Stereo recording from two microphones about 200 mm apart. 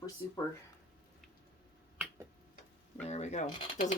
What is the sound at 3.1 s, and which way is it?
Speech, 35° left (ahead or behind).